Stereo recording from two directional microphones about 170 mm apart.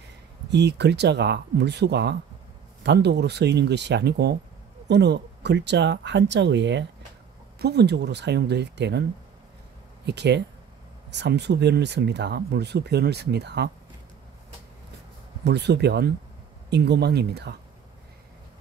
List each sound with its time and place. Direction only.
0.5 s speech: 90° right
7.5 s speech: 75° right (ahead or behind)
10.0 s speech: 85° right
15.4 s speech: 80° right